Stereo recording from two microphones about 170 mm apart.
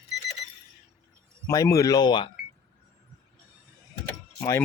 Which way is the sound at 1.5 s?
20° left (ahead or behind).